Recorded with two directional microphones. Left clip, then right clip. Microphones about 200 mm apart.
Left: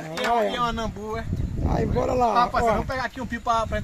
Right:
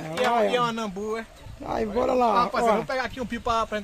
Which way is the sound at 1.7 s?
Centre (ahead or behind).